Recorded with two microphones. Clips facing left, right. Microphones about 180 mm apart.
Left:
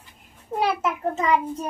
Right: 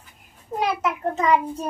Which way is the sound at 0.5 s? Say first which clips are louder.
Even; centre (ahead or behind).